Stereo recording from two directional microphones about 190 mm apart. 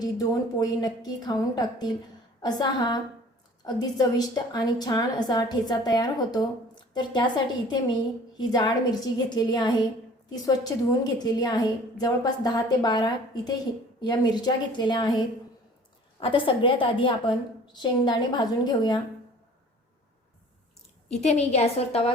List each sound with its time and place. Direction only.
0.0 s a woman's voice: 20° left (ahead or behind)
16.2 s a woman's voice: 25° left (ahead or behind)
21.1 s a woman's voice: 35° left (ahead or behind)